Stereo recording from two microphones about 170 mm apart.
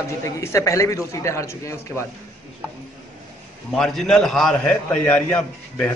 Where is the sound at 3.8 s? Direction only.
5° left (ahead or behind).